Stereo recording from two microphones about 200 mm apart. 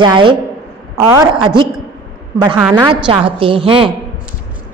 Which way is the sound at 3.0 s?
25° right (ahead or behind).